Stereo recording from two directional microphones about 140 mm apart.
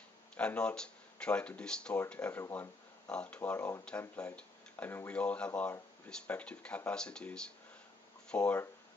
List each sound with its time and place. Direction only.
0.4 s speech: 5° left (ahead or behind)
3.1 s speech: 5° left (ahead or behind)